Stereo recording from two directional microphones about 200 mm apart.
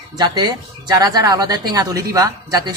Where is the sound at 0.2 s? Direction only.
20° right (ahead or behind).